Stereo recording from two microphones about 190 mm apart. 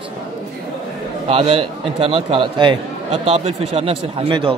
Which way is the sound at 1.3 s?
30° right (ahead or behind).